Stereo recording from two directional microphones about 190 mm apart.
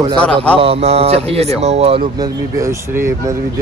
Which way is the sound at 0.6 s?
30° right (ahead or behind).